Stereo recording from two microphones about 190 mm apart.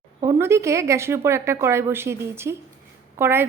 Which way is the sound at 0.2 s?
15° right (ahead or behind).